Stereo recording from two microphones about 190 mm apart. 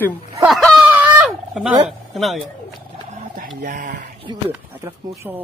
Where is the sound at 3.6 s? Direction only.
45° right (ahead or behind).